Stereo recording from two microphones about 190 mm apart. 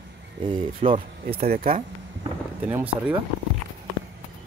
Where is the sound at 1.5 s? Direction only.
50° right (ahead or behind).